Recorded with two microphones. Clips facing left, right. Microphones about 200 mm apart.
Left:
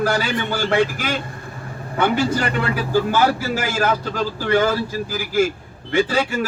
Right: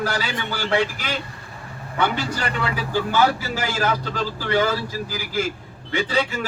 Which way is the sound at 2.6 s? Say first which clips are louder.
Left 3 dB; 50° left (ahead or behind).